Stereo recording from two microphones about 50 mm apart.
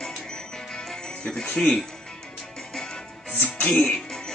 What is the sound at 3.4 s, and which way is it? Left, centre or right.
Music, left.